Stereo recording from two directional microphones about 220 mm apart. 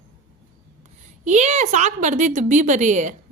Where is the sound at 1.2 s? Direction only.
30° right (ahead or behind).